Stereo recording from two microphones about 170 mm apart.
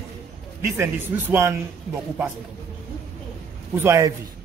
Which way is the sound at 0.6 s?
15° right (ahead or behind).